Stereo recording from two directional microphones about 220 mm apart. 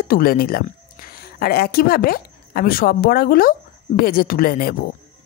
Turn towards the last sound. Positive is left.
turn(degrees=40)  # may be behind; listen again after turning